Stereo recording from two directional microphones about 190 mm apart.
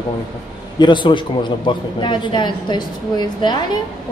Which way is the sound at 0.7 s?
25° left (ahead or behind).